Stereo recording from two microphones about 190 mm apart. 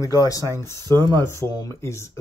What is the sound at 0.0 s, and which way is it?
Speech, 20° left (ahead or behind).